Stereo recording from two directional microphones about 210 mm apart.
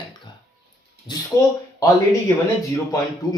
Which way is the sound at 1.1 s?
20° left (ahead or behind).